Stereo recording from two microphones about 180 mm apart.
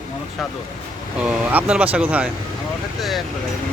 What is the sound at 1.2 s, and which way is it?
Speech, 5° right (ahead or behind).